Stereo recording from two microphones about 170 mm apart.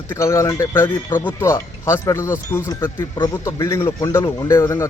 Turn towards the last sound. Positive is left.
turn(degrees=15)  # may be behind; listen again after turning